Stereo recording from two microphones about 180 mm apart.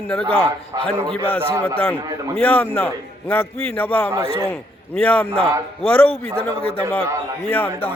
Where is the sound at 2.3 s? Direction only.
10° left (ahead or behind).